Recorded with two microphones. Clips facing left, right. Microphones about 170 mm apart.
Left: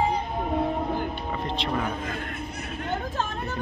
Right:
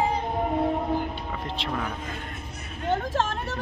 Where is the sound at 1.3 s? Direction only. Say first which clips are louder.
Left 3 dB; 5° left (ahead or behind).